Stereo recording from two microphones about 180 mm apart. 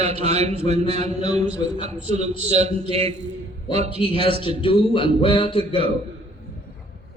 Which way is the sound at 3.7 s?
25° left (ahead or behind).